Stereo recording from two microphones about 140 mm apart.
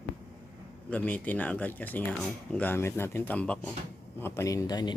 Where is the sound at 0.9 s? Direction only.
10° left (ahead or behind); by 4.9 s 30° left (ahead or behind).